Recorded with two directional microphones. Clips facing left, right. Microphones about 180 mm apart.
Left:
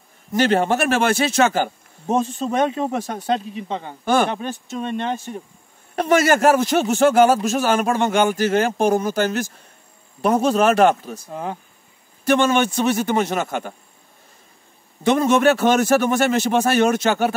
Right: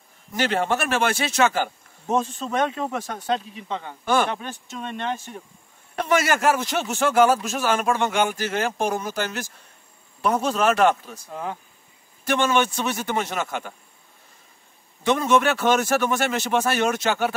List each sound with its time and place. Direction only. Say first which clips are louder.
0.3 s a man's voice: left 5 dB; 40° left (ahead or behind)
4.0 s a man's voice: left 3 dB; 45° left (ahead or behind)
4.3 s a man's voice: left 5 dB; 35° left (ahead or behind)
5.9 s a man's voice: left 5 dB; 40° left (ahead or behind)
15.0 s a man's voice: left 4 dB; 45° left (ahead or behind)